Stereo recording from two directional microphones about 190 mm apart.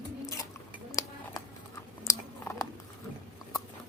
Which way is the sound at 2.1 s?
15° left (ahead or behind).